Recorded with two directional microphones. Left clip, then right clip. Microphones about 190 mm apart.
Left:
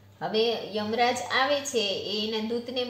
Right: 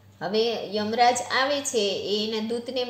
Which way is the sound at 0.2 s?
35° right (ahead or behind).